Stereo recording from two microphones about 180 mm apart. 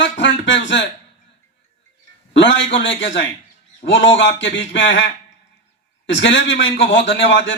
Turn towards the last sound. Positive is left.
turn(degrees=90)